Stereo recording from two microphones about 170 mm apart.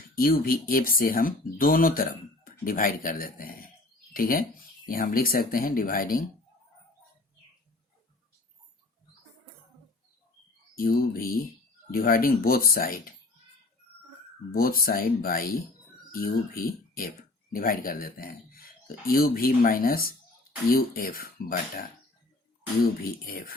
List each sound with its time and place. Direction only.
0.2 s speech: 55° left (ahead or behind)
10.8 s speech: 60° left (ahead or behind)
14.5 s speech: 60° left (ahead or behind)
23.2 s speech: 65° left (ahead or behind)